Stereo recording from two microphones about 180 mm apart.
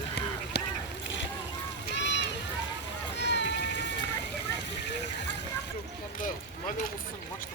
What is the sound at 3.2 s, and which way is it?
Run, 75° left (ahead or behind).